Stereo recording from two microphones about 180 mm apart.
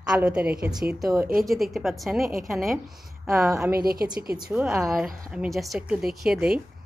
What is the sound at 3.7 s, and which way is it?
Speech, 55° right (ahead or behind).